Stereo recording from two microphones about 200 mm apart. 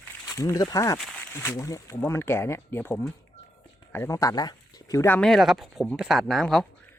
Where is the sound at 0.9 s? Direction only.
5° left (ahead or behind).